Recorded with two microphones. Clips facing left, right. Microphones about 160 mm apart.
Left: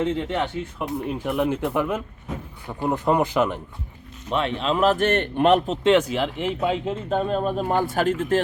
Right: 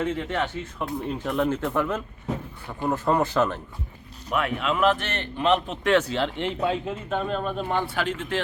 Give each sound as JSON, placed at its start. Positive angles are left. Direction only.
{"t": 0.0, "sound": "speech", "side_deg": 20}
{"t": 4.3, "sound": "a man's voice", "side_deg": 30}
{"t": 5.8, "sound": "speech", "side_deg": 15}
{"t": 7.1, "sound": "a man's voice", "side_deg": 35}